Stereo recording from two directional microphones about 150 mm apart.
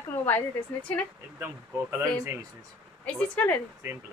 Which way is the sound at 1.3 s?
15° right (ahead or behind).